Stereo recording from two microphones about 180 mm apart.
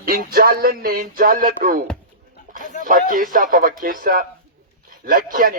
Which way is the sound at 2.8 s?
50° right (ahead or behind).